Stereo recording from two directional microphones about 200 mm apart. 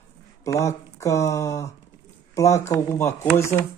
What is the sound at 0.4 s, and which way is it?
Speech, 15° left (ahead or behind).